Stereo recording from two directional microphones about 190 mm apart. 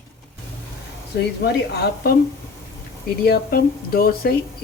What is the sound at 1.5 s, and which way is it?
Speech, 60° left (ahead or behind).